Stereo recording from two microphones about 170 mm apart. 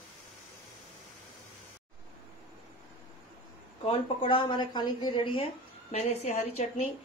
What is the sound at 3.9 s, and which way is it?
A woman's voice, 30° left (ahead or behind).